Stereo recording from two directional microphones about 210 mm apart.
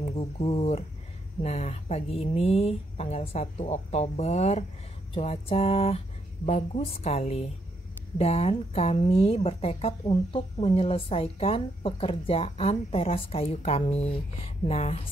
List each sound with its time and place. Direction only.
0.0 s speech: 30° left (ahead or behind)